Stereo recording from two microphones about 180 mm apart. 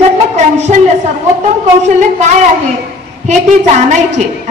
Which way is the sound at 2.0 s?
40° right (ahead or behind).